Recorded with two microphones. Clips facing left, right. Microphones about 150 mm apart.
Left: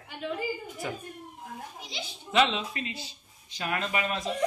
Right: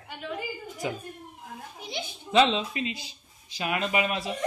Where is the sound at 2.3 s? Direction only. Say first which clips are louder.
Right 3 dB; 25° right (ahead or behind).